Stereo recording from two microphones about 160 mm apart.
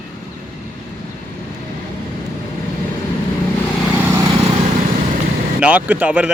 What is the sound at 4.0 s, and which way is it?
Vehicle, 20° right (ahead or behind).